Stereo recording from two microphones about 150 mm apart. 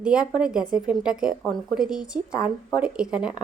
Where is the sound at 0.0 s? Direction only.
5° right (ahead or behind).